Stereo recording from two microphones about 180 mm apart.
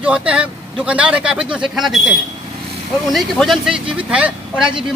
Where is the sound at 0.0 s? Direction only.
5° right (ahead or behind).